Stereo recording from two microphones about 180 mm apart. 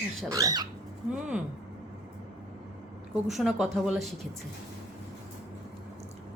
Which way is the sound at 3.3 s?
Centre (ahead or behind).